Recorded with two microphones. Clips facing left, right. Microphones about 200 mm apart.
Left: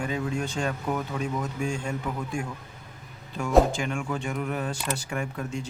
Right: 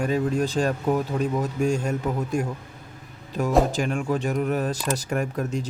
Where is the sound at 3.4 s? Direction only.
40° right (ahead or behind).